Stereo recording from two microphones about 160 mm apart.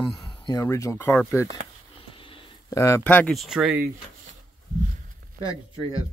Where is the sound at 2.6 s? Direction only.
20° left (ahead or behind); by 3.8 s 5° right (ahead or behind).